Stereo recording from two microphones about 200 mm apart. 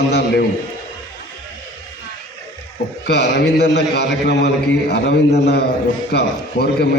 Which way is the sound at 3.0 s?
55° left (ahead or behind).